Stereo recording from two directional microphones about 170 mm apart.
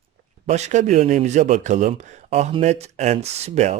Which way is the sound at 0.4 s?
40° right (ahead or behind).